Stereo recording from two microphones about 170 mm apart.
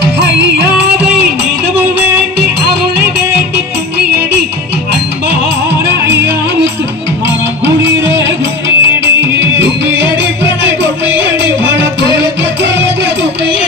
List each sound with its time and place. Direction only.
5.9 s music: 90° right
7.8 s music: 90° right
10.4 s music: 90° right